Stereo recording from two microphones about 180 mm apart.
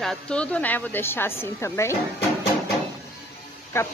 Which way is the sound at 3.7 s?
15° left (ahead or behind).